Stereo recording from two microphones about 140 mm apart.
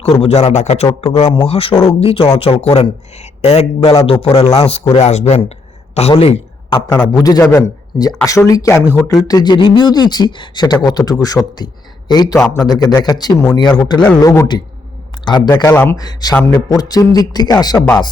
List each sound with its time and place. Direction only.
0.0 s speech: 45° left (ahead or behind)
6.7 s a man's voice: 25° left (ahead or behind)
15.7 s speech: 15° left (ahead or behind)
16.0 s a man's voice: 30° left (ahead or behind)